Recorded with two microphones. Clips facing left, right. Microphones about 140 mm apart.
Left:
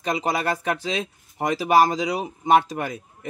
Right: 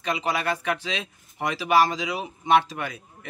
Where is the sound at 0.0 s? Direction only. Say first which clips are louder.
Left 2 dB; 40° left (ahead or behind).